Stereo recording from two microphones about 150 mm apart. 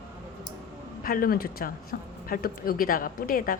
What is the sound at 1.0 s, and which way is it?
Speech, 75° left (ahead or behind).